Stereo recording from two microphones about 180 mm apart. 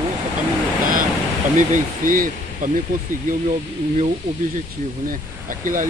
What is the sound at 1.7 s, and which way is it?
Speech, 50° right (ahead or behind).